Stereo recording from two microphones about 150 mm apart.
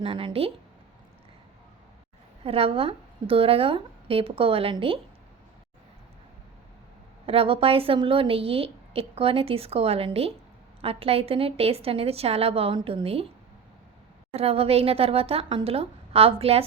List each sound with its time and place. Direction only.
0.0 s a woman's voice: 35° right (ahead or behind)
2.4 s a woman's voice: 40° right (ahead or behind)
7.3 s a woman's voice: 40° right (ahead or behind)
14.3 s a woman's voice: 40° right (ahead or behind)